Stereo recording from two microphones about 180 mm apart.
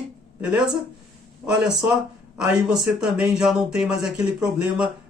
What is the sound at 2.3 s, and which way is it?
Speech, centre (ahead or behind).